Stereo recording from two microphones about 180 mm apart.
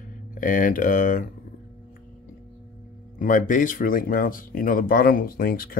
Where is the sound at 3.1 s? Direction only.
45° left (ahead or behind).